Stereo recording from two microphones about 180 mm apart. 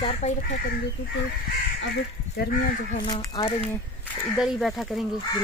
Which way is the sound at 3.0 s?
25° left (ahead or behind).